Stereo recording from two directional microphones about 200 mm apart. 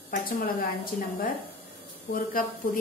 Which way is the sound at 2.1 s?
45° left (ahead or behind).